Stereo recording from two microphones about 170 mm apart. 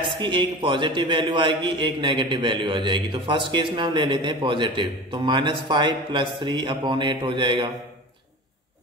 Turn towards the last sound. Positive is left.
turn(degrees=-30)  # may be behind; listen again after turning